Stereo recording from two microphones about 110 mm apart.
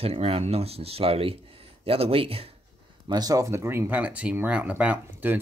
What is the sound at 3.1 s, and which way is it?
Speech, 35° right (ahead or behind).